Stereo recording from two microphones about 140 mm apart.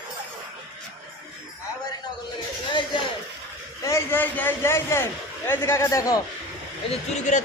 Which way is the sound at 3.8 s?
20° left (ahead or behind).